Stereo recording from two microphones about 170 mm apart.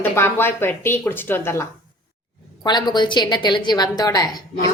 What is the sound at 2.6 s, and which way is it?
A woman's voice, 25° left (ahead or behind).